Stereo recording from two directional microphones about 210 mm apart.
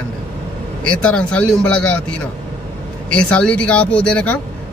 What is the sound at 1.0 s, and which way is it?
Speech, 5° left (ahead or behind).